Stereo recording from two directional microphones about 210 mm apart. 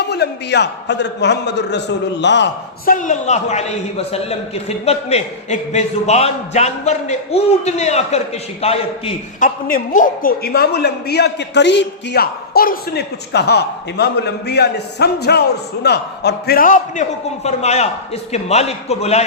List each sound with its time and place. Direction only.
0.0 s a man's voice: 50° left (ahead or behind)
2.9 s a man's voice: 35° left (ahead or behind)
9.6 s a man's voice: 40° left (ahead or behind)